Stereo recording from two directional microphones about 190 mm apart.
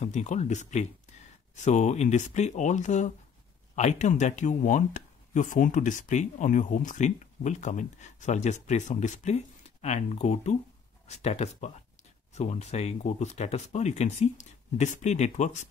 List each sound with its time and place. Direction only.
0.0 s speech: 40° left (ahead or behind)